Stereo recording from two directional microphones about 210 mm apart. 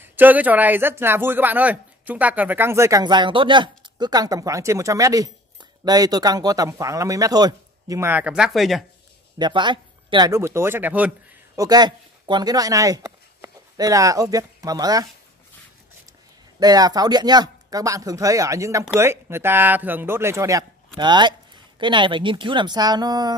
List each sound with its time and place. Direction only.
0.0 s speech: 10° right (ahead or behind)
9.4 s speech: 20° right (ahead or behind)
16.5 s speech: 20° right (ahead or behind)